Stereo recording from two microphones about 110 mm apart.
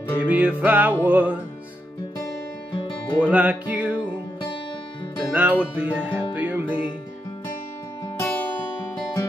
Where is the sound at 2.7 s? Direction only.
50° left (ahead or behind).